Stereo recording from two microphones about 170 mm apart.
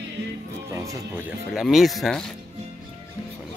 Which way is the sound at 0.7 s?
15° right (ahead or behind).